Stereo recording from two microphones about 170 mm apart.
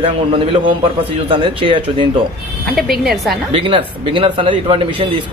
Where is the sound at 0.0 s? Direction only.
30° right (ahead or behind).